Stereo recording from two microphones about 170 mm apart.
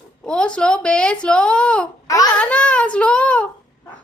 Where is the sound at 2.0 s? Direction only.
20° left (ahead or behind).